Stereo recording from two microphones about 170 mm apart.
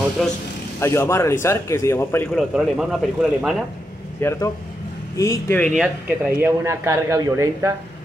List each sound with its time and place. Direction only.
0.2 s speech: centre (ahead or behind)
0.7 s speech: 15° left (ahead or behind)
2.3 s speech: 5° right (ahead or behind)
4.2 s a man's voice: 15° left (ahead or behind)
5.8 s speech: 10° right (ahead or behind)